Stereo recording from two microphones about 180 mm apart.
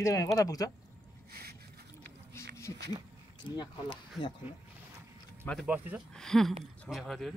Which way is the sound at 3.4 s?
25° left (ahead or behind).